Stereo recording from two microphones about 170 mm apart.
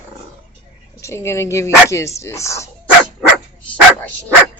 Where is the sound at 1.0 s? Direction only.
15° left (ahead or behind).